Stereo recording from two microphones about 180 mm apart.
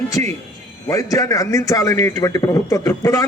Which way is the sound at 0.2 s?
10° left (ahead or behind).